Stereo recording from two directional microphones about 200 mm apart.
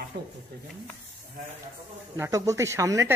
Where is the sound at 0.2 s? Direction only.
55° right (ahead or behind).